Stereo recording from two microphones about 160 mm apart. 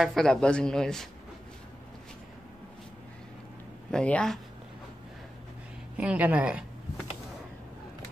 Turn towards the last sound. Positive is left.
turn(degrees=-10)  # may be behind; listen again after turning